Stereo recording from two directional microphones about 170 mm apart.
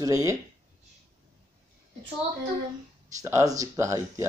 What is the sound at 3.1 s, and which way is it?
Speech, 15° right (ahead or behind).